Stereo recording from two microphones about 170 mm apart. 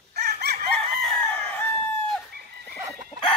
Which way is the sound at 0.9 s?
5° left (ahead or behind).